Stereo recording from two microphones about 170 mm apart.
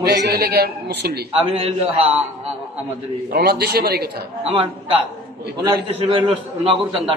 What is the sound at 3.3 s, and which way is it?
Speech, 65° right (ahead or behind).